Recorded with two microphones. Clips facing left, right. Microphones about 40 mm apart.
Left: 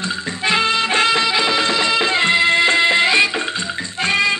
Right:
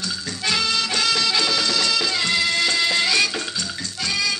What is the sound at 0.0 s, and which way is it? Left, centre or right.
Music, left.